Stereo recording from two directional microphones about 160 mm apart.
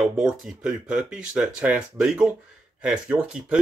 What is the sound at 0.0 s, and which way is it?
Speech, 5° right (ahead or behind).